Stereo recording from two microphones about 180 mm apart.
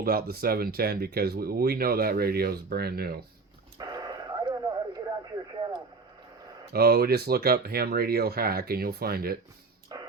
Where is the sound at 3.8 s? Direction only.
25° right (ahead or behind).